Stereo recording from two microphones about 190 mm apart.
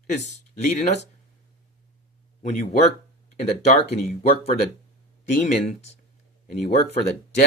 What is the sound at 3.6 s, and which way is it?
Speech, 35° left (ahead or behind).